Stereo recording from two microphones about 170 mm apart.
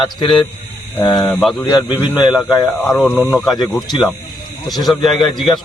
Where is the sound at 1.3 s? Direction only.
Centre (ahead or behind).